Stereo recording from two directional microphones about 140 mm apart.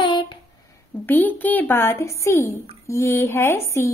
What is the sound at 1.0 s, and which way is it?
A woman's voice, 15° left (ahead or behind).